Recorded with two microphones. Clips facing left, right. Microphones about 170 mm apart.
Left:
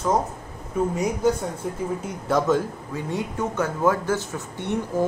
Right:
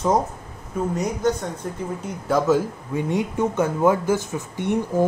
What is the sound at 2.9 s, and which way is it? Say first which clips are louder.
Speech: right 6 dB; 20° right (ahead or behind).